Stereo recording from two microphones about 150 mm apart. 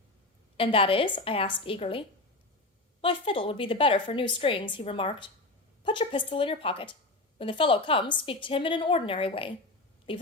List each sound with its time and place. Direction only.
0.5 s a woman's voice: 35° left (ahead or behind)